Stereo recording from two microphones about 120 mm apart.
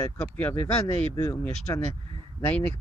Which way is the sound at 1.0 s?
50° right (ahead or behind).